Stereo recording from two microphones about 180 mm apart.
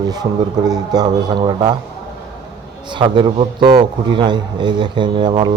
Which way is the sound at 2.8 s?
25° right (ahead or behind).